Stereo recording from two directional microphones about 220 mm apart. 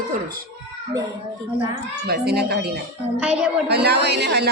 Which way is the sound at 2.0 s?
45° right (ahead or behind).